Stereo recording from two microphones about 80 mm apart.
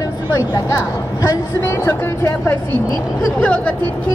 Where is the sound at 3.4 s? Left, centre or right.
Centre.